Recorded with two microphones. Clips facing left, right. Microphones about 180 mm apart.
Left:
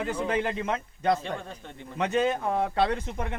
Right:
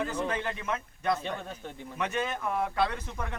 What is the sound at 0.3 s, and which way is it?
Speech, 25° left (ahead or behind).